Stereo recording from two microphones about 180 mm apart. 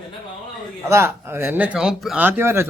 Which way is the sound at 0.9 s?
15° right (ahead or behind).